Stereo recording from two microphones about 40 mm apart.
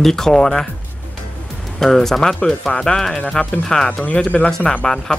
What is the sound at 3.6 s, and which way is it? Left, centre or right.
Speech, centre.